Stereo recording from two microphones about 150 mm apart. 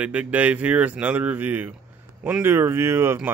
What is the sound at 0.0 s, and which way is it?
Speech, 10° right (ahead or behind).